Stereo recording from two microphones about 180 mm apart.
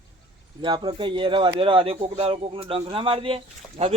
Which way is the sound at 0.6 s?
25° right (ahead or behind).